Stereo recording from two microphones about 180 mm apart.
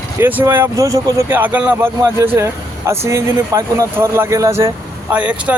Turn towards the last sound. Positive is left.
turn(degrees=-10)  # may be behind; listen again after turning